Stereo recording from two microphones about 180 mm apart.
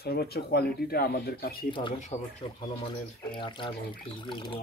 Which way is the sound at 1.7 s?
25° left (ahead or behind).